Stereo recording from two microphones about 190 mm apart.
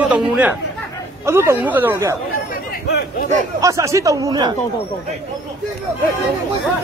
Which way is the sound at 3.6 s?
15° right (ahead or behind).